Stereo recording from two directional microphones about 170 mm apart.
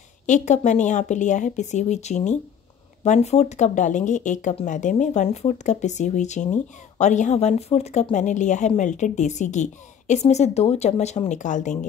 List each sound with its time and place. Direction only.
0.3 s speech: 45° left (ahead or behind)